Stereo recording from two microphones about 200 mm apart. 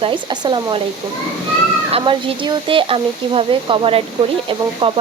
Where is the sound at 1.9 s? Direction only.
25° right (ahead or behind).